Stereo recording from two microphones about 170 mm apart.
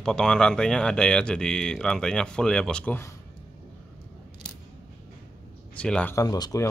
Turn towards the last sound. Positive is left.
turn(degrees=20)  # may be behind; listen again after turning